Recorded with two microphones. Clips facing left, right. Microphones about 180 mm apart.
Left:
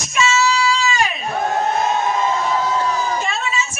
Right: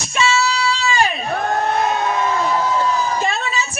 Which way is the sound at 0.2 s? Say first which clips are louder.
Left 1 dB; 30° right (ahead or behind).